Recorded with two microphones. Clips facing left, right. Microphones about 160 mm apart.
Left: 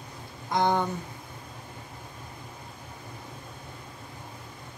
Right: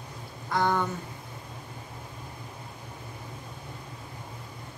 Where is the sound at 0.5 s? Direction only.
15° left (ahead or behind).